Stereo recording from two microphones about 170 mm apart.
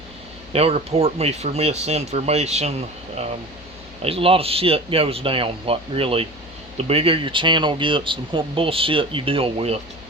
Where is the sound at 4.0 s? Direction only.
35° right (ahead or behind).